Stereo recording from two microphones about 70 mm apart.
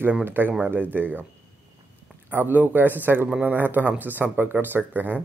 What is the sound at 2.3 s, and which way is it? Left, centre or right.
Speech, right.